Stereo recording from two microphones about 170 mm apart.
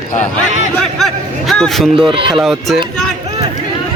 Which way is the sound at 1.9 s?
30° right (ahead or behind).